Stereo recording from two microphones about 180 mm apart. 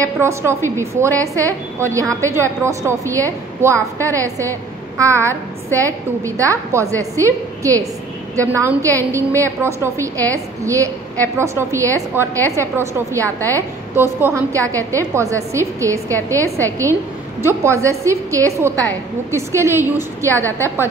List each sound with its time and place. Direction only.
0.0 s a woman's voice: 15° right (ahead or behind)